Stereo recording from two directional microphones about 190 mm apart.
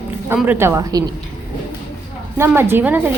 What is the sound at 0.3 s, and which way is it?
Speech, 10° right (ahead or behind).